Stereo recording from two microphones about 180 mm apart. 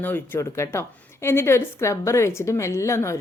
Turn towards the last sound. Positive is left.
turn(degrees=15)  # may be behind; listen again after turning